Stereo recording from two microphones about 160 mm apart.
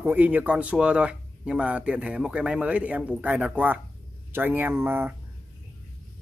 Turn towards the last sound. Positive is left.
turn(degrees=-15)  # may be behind; listen again after turning